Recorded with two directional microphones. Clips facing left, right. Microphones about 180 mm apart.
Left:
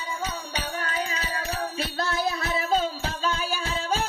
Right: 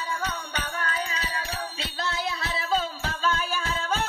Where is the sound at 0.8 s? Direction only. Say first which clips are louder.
Even; 35° left (ahead or behind).